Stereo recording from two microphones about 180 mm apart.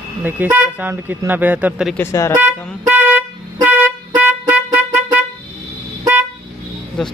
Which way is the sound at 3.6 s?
10° right (ahead or behind).